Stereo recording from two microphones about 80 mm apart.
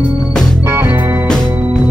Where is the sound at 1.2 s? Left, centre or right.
Centre.